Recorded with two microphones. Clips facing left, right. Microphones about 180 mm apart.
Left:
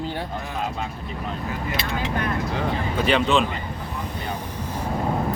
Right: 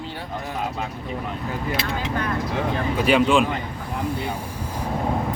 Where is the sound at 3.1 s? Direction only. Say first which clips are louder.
Right 2 dB; 10° right (ahead or behind).